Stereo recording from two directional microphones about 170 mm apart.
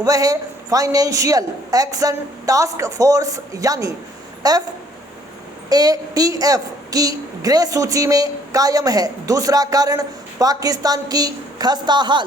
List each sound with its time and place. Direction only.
0.0 s a woman's voice: 20° right (ahead or behind)
5.6 s a woman's voice: 20° right (ahead or behind)